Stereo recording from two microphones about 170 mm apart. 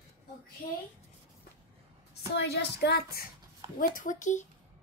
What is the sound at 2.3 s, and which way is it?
Speech, 75° left (ahead or behind).